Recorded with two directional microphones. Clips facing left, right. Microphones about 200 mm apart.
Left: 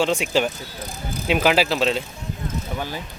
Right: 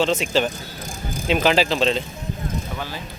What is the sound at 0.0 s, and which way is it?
Speech, 10° left (ahead or behind).